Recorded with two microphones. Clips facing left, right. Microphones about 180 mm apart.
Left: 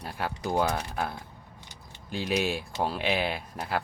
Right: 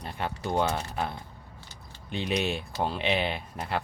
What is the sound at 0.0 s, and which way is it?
Speech, 5° left (ahead or behind).